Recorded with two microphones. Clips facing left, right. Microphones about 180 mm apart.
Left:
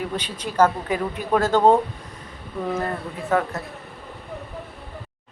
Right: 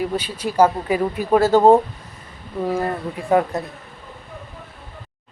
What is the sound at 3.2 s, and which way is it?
Speech, 15° right (ahead or behind).